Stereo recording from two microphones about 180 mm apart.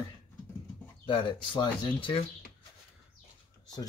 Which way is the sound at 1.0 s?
30° left (ahead or behind).